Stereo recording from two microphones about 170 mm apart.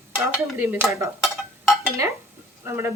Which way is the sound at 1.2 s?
Centre (ahead or behind).